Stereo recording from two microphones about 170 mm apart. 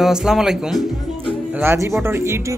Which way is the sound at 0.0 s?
5° right (ahead or behind).